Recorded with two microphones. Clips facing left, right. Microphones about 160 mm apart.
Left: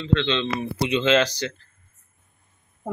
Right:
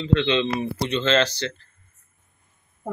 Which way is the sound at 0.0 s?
10° right (ahead or behind).